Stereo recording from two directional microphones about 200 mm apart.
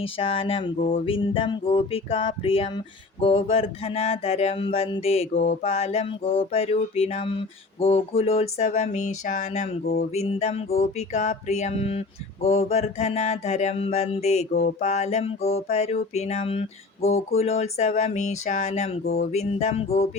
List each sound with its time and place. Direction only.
0.2 s music: 30° left (ahead or behind)
0.8 s music: 40° left (ahead or behind)
1.0 s music: 25° left (ahead or behind)